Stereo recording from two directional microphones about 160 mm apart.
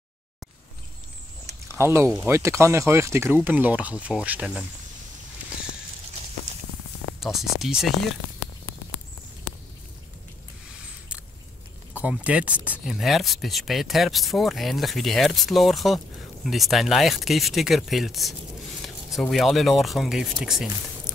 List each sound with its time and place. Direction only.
1.7 s speech: 15° right (ahead or behind)
7.2 s speech: centre (ahead or behind)
11.9 s speech: 10° right (ahead or behind)